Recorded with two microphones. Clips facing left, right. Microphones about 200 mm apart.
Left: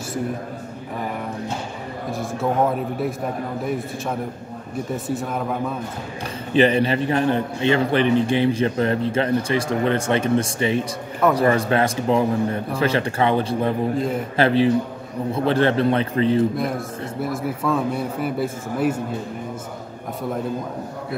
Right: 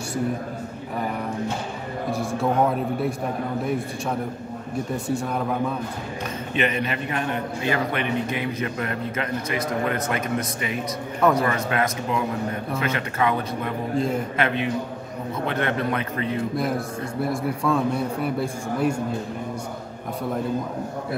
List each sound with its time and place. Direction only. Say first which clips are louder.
2.0 s a man's voice: even; centre (ahead or behind)
6.5 s a man's voice: left 8 dB; 30° left (ahead or behind)
13.9 s a man's voice: even; centre (ahead or behind)
14.3 s a man's voice: left 7 dB; 30° left (ahead or behind)
16.5 s a man's voice: even; centre (ahead or behind)